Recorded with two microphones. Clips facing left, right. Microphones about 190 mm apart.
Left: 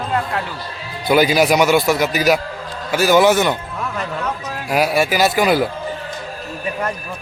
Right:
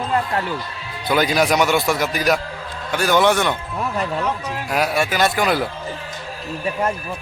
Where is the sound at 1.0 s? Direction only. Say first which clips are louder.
Left 4 dB; 5° left (ahead or behind).